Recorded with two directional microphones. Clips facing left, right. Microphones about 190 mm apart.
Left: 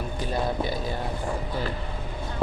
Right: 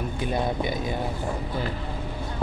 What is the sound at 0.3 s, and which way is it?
Speech, 15° right (ahead or behind).